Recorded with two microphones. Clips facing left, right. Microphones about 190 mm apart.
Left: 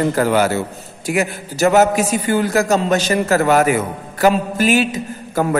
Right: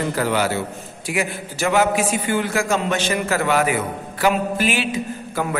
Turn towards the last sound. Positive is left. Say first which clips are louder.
# left 3 dB
turn(degrees=40)  # may be behind; listen again after turning